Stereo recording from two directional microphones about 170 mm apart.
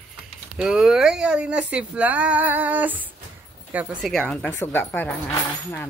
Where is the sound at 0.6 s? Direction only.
Centre (ahead or behind).